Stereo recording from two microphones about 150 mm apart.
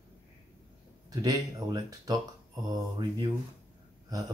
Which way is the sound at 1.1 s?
25° right (ahead or behind).